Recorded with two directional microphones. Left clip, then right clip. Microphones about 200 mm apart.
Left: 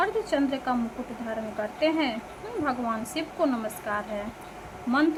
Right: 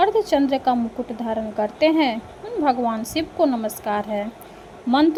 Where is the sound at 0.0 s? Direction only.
25° right (ahead or behind).